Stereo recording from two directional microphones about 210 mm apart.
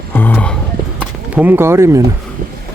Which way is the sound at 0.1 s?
10° left (ahead or behind).